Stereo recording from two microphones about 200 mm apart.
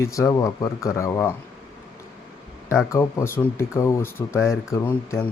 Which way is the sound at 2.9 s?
15° left (ahead or behind).